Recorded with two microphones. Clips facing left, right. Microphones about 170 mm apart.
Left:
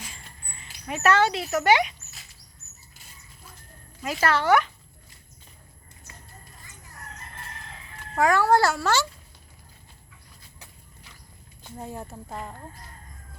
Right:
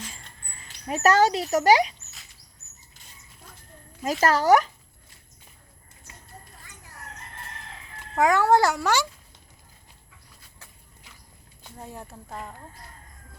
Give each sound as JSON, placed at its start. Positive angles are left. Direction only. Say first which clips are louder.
{"t": 0.0, "sound": "a sound", "louder": "right 2 dB", "side_deg": 10}
{"t": 0.9, "sound": "speech", "louder": "right 2 dB", "side_deg": -40}
{"t": 4.0, "sound": "speech", "louder": "right 2 dB", "side_deg": -40}
{"t": 8.2, "sound": "a child's voice", "louder": "right 1 dB", "side_deg": -20}
{"t": 11.8, "sound": "speech", "louder": "left 4 dB", "side_deg": 0}